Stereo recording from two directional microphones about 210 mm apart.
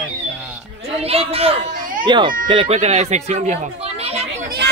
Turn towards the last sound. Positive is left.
turn(degrees=-50)  # may be behind; listen again after turning